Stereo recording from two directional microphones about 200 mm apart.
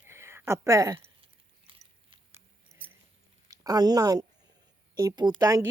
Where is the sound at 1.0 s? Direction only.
25° right (ahead or behind).